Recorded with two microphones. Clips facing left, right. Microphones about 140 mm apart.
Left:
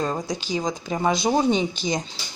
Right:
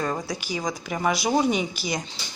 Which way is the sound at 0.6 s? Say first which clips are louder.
Left 3 dB; 25° left (ahead or behind).